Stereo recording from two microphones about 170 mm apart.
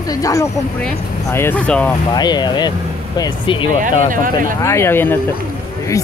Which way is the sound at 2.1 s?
25° left (ahead or behind).